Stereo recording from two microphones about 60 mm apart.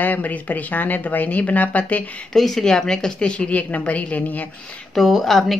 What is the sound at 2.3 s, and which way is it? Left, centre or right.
A woman's voice, centre.